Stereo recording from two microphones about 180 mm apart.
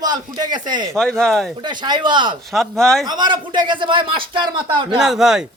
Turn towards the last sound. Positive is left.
turn(degrees=-5)  # may be behind; listen again after turning